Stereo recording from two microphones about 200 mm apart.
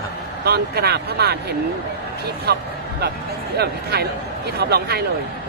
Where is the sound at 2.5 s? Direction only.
55° right (ahead or behind).